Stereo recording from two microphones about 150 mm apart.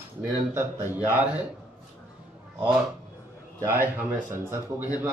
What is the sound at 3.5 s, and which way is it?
Speech, 15° right (ahead or behind).